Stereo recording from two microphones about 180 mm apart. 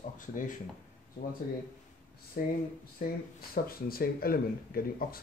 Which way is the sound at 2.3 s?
50° left (ahead or behind).